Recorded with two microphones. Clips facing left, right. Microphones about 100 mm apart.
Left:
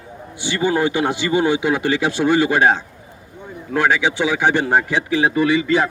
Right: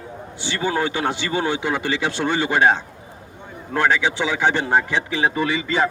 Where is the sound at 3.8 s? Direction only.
15° left (ahead or behind).